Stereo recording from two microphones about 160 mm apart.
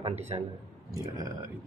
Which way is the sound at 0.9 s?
20° right (ahead or behind).